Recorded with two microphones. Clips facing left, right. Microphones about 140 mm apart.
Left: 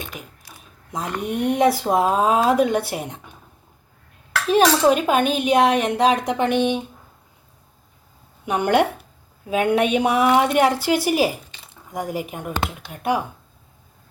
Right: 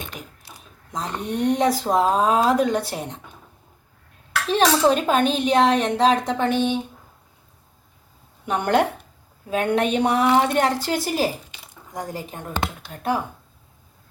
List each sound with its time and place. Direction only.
0.1 s mechanisms: 5° left (ahead or behind)
0.9 s speech: 10° left (ahead or behind)
4.4 s speech: 10° left (ahead or behind)
8.4 s speech: 10° left (ahead or behind)
11.5 s a sound: 10° right (ahead or behind)
11.9 s speech: 15° left (ahead or behind)